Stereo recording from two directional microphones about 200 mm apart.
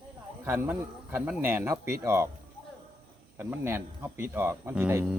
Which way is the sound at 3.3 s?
10° right (ahead or behind).